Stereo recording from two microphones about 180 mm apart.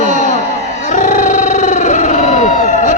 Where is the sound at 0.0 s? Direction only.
45° left (ahead or behind).